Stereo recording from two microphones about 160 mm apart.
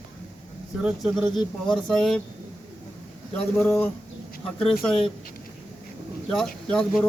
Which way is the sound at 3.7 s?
15° left (ahead or behind).